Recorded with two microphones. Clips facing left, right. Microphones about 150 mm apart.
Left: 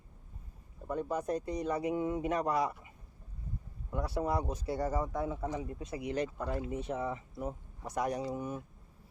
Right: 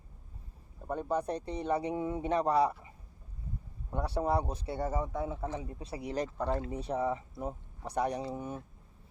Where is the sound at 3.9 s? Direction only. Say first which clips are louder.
Right 2 dB; 30° right (ahead or behind).